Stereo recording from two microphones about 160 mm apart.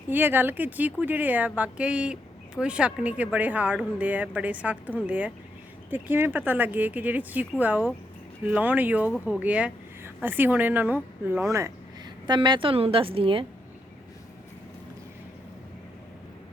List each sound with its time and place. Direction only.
0.1 s speech: 10° right (ahead or behind)
12.2 s a woman's voice: 30° right (ahead or behind)